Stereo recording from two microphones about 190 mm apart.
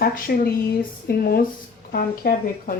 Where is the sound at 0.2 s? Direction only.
45° left (ahead or behind).